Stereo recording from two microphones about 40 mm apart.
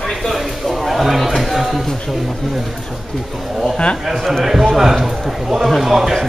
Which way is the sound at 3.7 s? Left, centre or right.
Left.